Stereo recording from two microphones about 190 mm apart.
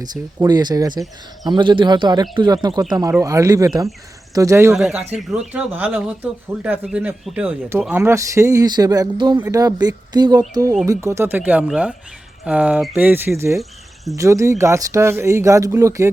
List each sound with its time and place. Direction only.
0.4 s speech: 20° right (ahead or behind)
4.7 s speech: centre (ahead or behind)
13.6 s a sound: centre (ahead or behind)
14.2 s speech: 15° right (ahead or behind)